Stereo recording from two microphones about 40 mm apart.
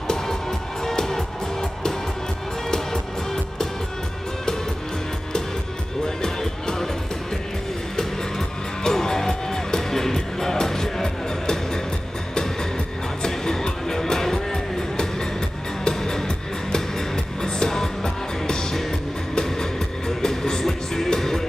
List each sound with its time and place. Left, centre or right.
0.1 s music: centre
6.0 s music: centre
8.8 s music: centre
13.2 s music: centre
17.4 s music: centre